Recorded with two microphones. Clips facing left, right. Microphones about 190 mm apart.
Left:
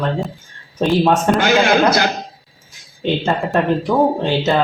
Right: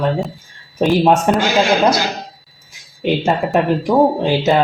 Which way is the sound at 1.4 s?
55° left (ahead or behind).